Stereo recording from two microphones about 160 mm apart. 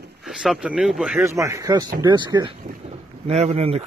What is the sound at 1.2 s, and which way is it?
A man's voice, 20° right (ahead or behind).